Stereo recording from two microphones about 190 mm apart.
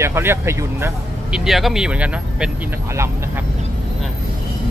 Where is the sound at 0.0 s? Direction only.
15° right (ahead or behind).